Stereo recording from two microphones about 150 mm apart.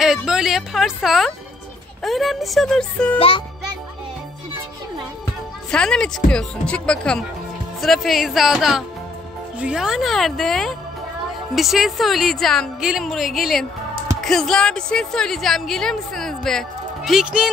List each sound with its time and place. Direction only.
0.0 s a woman's voice: 5° right (ahead or behind)
3.2 s music: 35° left (ahead or behind)
5.7 s a woman's voice: 5° left (ahead or behind)